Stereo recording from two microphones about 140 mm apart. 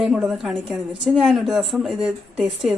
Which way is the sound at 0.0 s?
5° right (ahead or behind).